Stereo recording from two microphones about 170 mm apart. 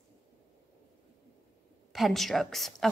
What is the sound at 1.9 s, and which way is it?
A woman's voice, centre (ahead or behind).